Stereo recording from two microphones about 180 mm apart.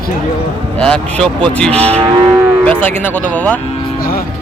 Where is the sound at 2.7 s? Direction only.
10° left (ahead or behind).